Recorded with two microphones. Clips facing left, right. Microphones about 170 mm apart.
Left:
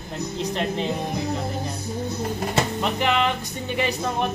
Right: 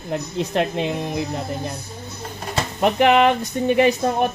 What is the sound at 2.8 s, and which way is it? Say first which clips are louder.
Speech: right 11 dB; 55° right (ahead or behind).